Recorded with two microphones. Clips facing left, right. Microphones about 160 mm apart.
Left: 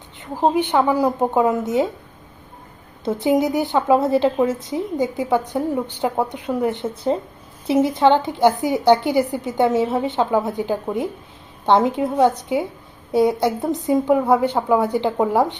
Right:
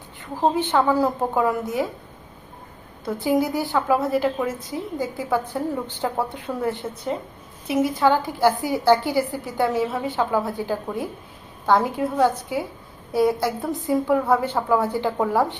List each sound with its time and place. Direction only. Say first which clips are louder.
0.4 s a woman's voice: left 2 dB; 15° left (ahead or behind)
3.0 s a woman's voice: left 3 dB; 20° left (ahead or behind)
7.1 s a woman's voice: left 5 dB; 30° left (ahead or behind)